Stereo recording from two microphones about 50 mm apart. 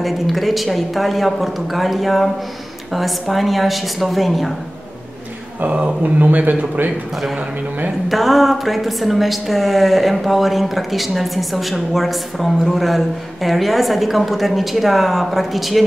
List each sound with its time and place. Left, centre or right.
0.0 s a woman's voice: centre
5.6 s speech: right
8.1 s a woman's voice: centre